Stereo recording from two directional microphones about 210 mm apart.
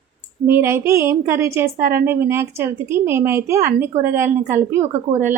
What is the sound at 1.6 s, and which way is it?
Speech, 45° right (ahead or behind).